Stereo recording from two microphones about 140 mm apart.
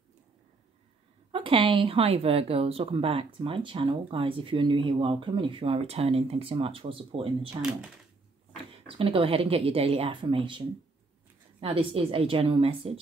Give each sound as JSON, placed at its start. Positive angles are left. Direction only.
{"t": 1.3, "sound": "speech", "side_deg": -40}
{"t": 7.4, "sound": "speech", "side_deg": -5}
{"t": 8.8, "sound": "speech", "side_deg": -40}
{"t": 11.6, "sound": "speech", "side_deg": -40}